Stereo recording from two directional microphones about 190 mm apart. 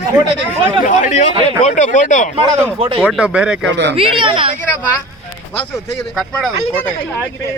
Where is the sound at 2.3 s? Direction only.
30° right (ahead or behind).